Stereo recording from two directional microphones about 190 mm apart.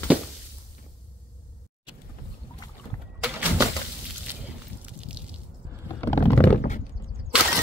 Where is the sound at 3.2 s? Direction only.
10° right (ahead or behind).